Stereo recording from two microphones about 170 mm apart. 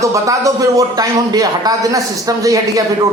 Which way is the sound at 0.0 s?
20° right (ahead or behind).